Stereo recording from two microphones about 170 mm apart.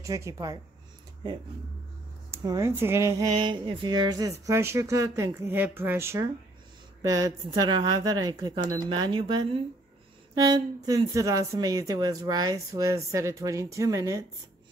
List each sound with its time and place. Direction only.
0.0 s speech: 15° right (ahead or behind)
2.3 s speech: 20° right (ahead or behind)
3.3 s speech: 30° right (ahead or behind)